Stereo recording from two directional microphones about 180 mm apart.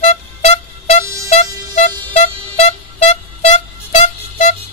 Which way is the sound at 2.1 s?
35° left (ahead or behind).